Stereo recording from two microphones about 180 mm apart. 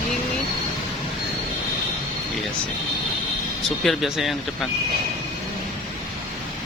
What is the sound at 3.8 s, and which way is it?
Speech, centre (ahead or behind).